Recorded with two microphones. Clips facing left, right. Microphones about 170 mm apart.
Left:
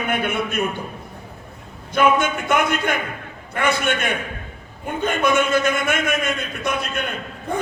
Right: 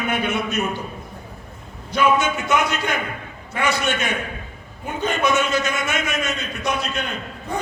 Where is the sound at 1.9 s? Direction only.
55° left (ahead or behind).